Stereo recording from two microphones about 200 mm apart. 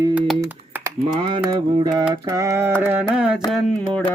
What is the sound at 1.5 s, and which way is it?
Mantra, 20° right (ahead or behind).